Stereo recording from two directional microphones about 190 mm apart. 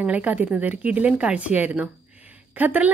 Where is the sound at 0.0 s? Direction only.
10° right (ahead or behind).